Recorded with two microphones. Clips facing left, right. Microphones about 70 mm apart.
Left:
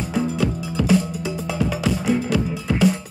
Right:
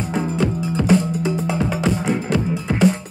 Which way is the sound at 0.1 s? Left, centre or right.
Right.